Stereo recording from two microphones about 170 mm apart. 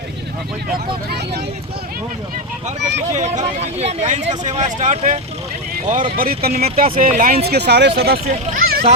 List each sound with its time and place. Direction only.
2.6 s speech: 45° right (ahead or behind)
6.1 s speech: 60° right (ahead or behind)
7.4 s speech: 75° right (ahead or behind)